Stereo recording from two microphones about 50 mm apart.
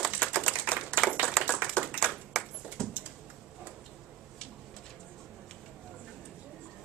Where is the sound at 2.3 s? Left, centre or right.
Centre.